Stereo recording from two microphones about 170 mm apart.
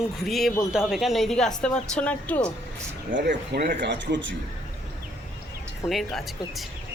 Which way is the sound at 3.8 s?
90° right.